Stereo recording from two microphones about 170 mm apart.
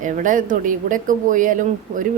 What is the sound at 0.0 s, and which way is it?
Speech, 50° right (ahead or behind).